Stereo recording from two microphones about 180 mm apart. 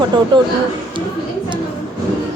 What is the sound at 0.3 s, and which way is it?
Speech, 25° right (ahead or behind).